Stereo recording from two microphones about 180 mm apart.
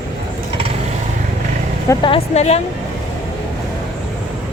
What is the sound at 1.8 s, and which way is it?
Speech, 25° left (ahead or behind).